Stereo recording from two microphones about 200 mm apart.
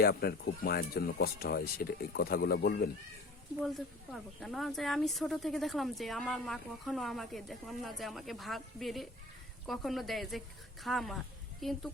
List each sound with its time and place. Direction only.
0.0 s speech: 50° left (ahead or behind)
3.6 s speech: centre (ahead or behind)